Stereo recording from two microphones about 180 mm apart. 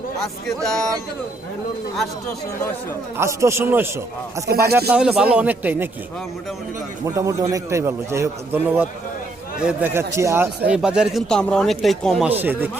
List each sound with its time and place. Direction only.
0.4 s a man's voice: centre (ahead or behind)
3.2 s a man's voice: 15° right (ahead or behind)
7.0 s a man's voice: 15° right (ahead or behind); by 12.3 s centre (ahead or behind)
12.3 s a man's voice: 10° right (ahead or behind)